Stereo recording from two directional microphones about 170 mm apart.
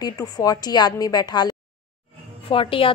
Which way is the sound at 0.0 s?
20° left (ahead or behind).